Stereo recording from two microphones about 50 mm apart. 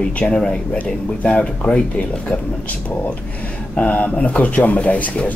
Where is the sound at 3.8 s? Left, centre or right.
Left.